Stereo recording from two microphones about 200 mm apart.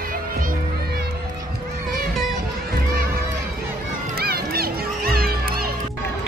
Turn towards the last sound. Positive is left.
turn(degrees=-50)  # may be behind; listen again after turning